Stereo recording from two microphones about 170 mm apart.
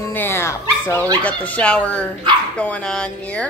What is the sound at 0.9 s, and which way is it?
Speech, 20° right (ahead or behind).